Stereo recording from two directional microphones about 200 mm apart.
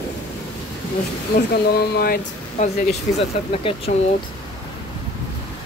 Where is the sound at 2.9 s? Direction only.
30° left (ahead or behind).